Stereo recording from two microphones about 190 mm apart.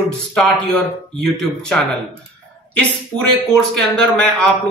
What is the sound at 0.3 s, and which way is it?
Speech, 5° left (ahead or behind).